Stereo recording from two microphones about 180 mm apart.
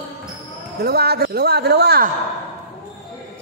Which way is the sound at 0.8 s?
60° right (ahead or behind).